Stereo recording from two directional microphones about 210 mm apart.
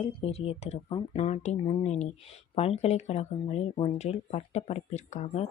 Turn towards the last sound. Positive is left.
turn(degrees=30)  # may be behind; listen again after turning